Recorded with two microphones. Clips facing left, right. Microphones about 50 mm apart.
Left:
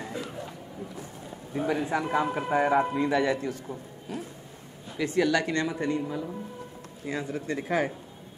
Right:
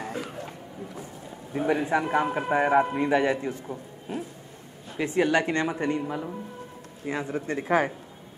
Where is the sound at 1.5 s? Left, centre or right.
Right.